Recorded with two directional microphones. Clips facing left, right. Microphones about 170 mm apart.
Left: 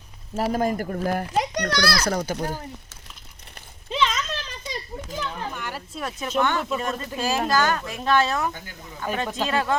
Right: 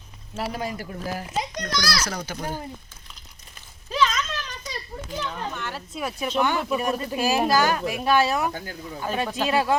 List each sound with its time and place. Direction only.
0.3 s a child's voice: 45° left (ahead or behind)
3.8 s a sound: 25° left (ahead or behind)
5.2 s speech: 5° left (ahead or behind)
5.9 s speech: 5° right (ahead or behind)